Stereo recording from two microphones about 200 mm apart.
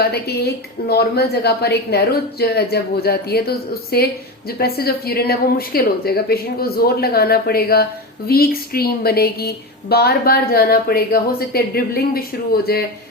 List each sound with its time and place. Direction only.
0.0 s a woman's voice: 55° left (ahead or behind)